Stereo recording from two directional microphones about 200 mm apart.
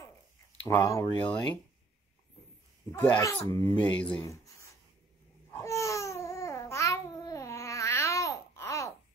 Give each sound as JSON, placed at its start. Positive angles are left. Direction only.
{"t": 0.7, "sound": "speech", "side_deg": 15}
{"t": 2.9, "sound": "speech", "side_deg": 10}
{"t": 5.5, "sound": "babbling", "side_deg": 15}